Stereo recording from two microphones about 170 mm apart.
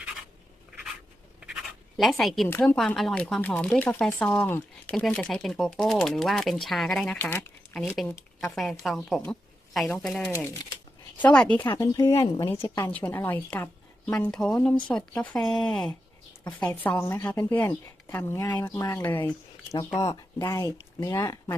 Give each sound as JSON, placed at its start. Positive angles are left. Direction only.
{"t": 2.0, "sound": "speech", "side_deg": 0}
{"t": 8.5, "sound": "speech", "side_deg": 0}